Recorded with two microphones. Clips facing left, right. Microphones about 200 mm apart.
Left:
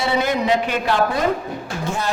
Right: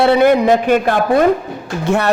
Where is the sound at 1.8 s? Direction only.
65° right (ahead or behind).